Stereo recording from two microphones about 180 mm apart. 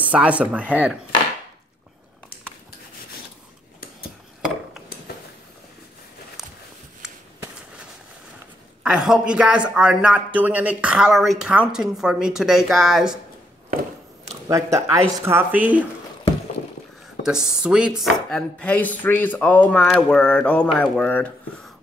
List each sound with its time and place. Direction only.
0.0 s speech: 10° right (ahead or behind)
6.4 s a sound: centre (ahead or behind)
8.8 s a woman's voice: 5° right (ahead or behind)
14.5 s speech: 15° right (ahead or behind)
17.2 s a woman's voice: 5° right (ahead or behind)